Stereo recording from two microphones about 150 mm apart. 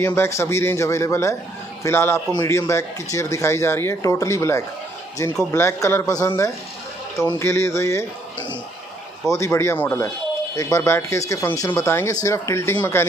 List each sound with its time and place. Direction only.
0.0 s a man's voice: 15° left (ahead or behind)
9.3 s a man's voice: 20° left (ahead or behind)